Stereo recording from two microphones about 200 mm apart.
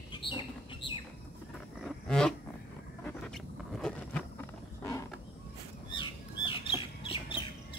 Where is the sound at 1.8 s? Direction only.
5° left (ahead or behind).